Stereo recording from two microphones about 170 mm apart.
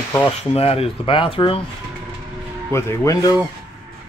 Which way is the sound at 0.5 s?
35° left (ahead or behind).